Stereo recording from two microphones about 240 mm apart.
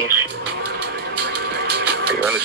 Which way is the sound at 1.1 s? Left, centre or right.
Right.